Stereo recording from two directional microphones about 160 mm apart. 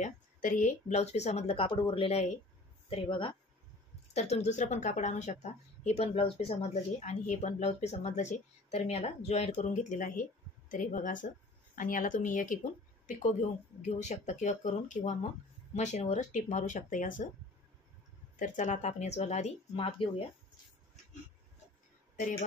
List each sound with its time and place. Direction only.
0.0 s a woman's voice: 55° left (ahead or behind); by 3.3 s 30° left (ahead or behind)
4.1 s a woman's voice: 40° left (ahead or behind)
13.8 s a woman's voice: 45° left (ahead or behind)
18.3 s a woman's voice: 50° left (ahead or behind)
20.0 s speech: 30° left (ahead or behind)